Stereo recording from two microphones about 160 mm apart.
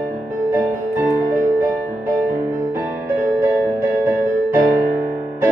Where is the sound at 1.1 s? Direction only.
15° right (ahead or behind).